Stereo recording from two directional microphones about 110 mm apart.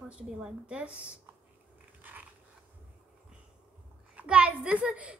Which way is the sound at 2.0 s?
15° right (ahead or behind).